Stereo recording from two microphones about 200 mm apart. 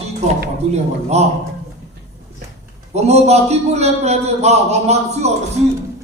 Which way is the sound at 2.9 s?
35° right (ahead or behind).